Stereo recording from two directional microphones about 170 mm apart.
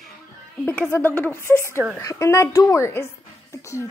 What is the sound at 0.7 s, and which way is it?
A woman's voice, 10° left (ahead or behind).